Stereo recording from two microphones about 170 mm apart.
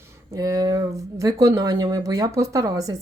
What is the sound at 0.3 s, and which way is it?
Speech, 20° right (ahead or behind).